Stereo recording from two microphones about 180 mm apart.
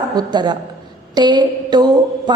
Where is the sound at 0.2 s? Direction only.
25° right (ahead or behind).